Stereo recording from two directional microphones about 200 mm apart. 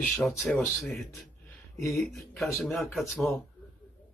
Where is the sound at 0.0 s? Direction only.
Centre (ahead or behind).